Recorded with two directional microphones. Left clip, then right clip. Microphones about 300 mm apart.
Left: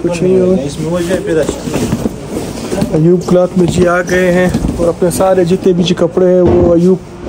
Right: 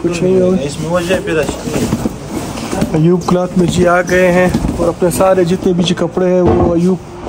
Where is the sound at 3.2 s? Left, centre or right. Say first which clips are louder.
Left 4 dB; centre.